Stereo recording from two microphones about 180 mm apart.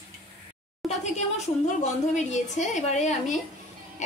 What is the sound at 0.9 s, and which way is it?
A woman's voice, 40° left (ahead or behind).